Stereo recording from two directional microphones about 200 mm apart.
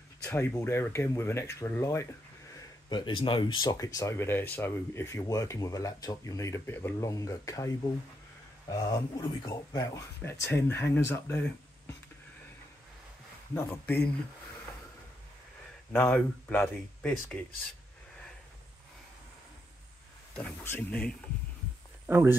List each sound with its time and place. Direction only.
0.2 s speech: 10° left (ahead or behind)
2.9 s speech: 25° left (ahead or behind)
13.6 s speech: 10° left (ahead or behind)
15.9 s speech: 5° left (ahead or behind)
20.3 s speech: 10° left (ahead or behind)
22.0 s speech: 10° right (ahead or behind)